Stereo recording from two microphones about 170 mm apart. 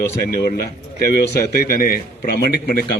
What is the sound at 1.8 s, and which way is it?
Speech, 55° left (ahead or behind).